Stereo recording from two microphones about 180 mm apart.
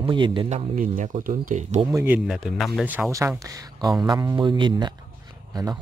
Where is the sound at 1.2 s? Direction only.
45° right (ahead or behind).